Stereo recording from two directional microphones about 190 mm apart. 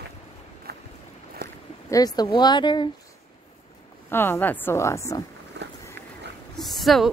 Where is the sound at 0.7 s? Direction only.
55° right (ahead or behind).